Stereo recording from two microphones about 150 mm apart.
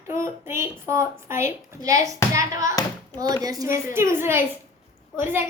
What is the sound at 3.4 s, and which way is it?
A woman's voice, 25° right (ahead or behind).